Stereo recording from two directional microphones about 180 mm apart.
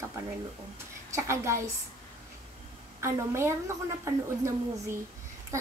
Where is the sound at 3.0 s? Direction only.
15° right (ahead or behind).